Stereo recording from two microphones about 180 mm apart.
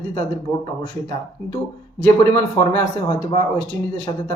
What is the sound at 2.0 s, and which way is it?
A man's voice, 15° left (ahead or behind).